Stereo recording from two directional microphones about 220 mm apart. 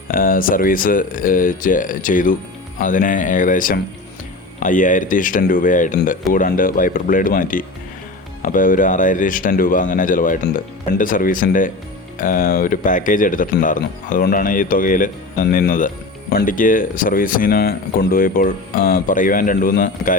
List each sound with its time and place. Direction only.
0.1 s speech: 40° left (ahead or behind)